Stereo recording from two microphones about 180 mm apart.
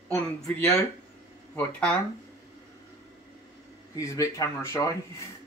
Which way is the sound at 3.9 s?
20° left (ahead or behind).